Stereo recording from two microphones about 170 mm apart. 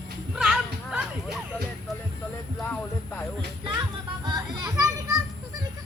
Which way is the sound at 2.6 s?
10° left (ahead or behind).